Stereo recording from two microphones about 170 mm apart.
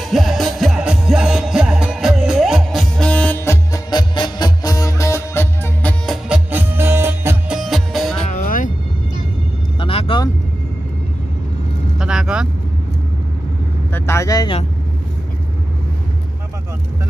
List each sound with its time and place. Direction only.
0.1 s music: centre (ahead or behind)
3.1 s music: 10° left (ahead or behind)
6.2 s music: 10° right (ahead or behind)
8.3 s music: 55° left (ahead or behind)
9.8 s vehicle: 30° left (ahead or behind)
12.0 s vehicle: 5° right (ahead or behind)
13.9 s vehicle: 15° left (ahead or behind)